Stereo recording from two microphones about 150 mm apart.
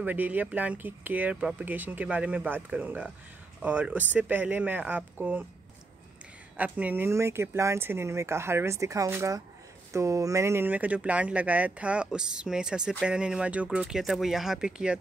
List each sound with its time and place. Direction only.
0.0 s speech: 10° right (ahead or behind)
6.5 s speech: 10° right (ahead or behind)